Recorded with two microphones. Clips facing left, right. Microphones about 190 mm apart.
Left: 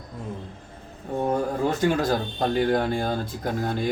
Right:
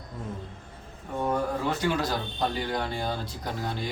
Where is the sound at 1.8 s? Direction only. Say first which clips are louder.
Left 5 dB; 50° left (ahead or behind).